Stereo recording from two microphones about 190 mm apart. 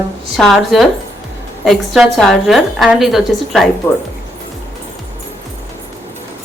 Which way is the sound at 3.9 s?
10° left (ahead or behind).